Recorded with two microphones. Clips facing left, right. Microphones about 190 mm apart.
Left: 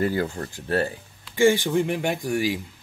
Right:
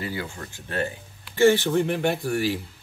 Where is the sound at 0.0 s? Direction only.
45° left (ahead or behind).